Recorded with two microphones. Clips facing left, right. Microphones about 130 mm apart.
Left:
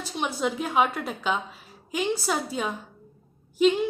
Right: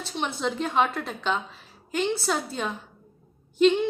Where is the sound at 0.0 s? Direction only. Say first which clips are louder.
Left 1 dB; 10° left (ahead or behind).